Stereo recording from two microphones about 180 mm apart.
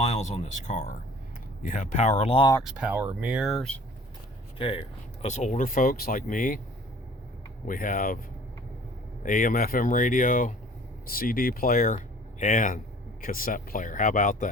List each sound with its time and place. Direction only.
0.0 s speech: 40° left (ahead or behind)
2.6 s speech: 5° right (ahead or behind)
4.5 s speech: 30° left (ahead or behind)
5.2 s speech: 40° left (ahead or behind)
7.7 s speech: 50° left (ahead or behind)
9.2 s speech: 45° left (ahead or behind)
11.9 s a sound: 45° left (ahead or behind)
13.2 s speech: 50° left (ahead or behind)